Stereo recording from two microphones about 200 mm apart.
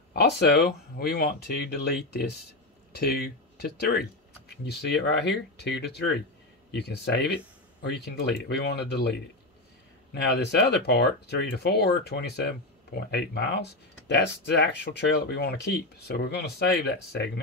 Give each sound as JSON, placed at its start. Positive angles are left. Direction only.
{"t": 0.1, "sound": "speech", "side_deg": 55}
{"t": 10.2, "sound": "speech", "side_deg": 55}